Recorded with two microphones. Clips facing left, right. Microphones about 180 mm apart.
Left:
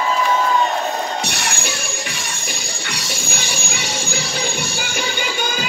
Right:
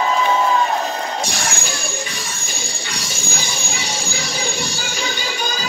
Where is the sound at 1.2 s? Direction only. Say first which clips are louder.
Even; 65° left (ahead or behind).